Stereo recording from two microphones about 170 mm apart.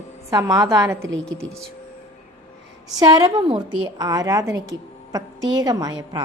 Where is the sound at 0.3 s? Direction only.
20° right (ahead or behind).